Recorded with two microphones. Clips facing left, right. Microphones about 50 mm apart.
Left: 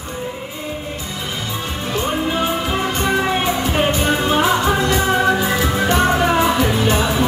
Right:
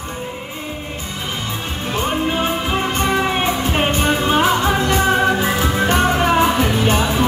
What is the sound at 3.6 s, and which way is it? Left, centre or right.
Music, right.